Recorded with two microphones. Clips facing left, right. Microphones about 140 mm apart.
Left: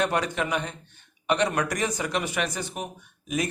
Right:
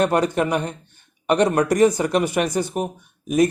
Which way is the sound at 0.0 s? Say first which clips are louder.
Right 7 dB; 45° right (ahead or behind).